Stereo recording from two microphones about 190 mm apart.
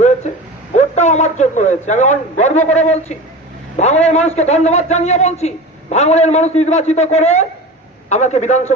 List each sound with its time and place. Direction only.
0.8 s a man's voice: 40° left (ahead or behind)